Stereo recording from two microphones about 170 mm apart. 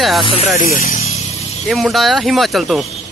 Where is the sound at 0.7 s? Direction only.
45° left (ahead or behind).